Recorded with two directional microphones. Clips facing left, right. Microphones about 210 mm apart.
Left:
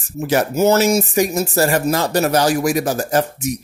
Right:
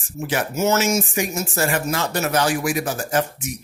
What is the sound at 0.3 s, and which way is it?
Speech, 35° left (ahead or behind).